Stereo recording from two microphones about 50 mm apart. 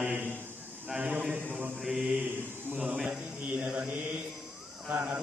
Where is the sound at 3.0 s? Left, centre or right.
Right.